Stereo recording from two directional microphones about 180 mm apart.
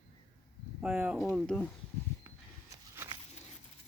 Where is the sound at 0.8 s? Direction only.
5° right (ahead or behind).